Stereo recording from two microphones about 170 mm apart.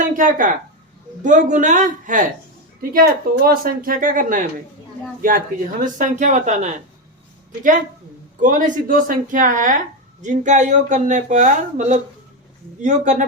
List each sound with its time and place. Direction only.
0.0 s a sound: 50° right (ahead or behind)
1.2 s speech: 50° right (ahead or behind)
2.9 s a woman's voice: 65° right (ahead or behind)
5.8 s speech: 50° right (ahead or behind)
8.4 s speech: 50° right (ahead or behind)